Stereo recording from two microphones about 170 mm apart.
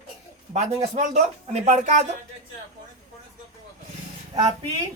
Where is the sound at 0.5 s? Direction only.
45° right (ahead or behind).